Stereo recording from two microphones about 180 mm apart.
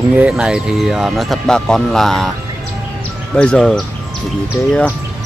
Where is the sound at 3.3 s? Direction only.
5° left (ahead or behind).